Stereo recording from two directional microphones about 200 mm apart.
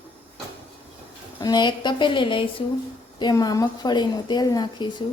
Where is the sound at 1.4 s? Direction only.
20° left (ahead or behind).